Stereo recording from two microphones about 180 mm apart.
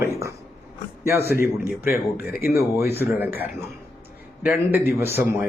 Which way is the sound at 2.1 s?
60° left (ahead or behind).